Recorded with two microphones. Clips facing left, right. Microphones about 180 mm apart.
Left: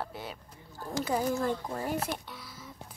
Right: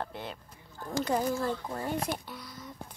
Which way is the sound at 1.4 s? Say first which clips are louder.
Left 1 dB; 20° left (ahead or behind).